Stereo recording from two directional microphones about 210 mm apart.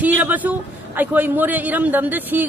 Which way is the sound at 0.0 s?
10° right (ahead or behind).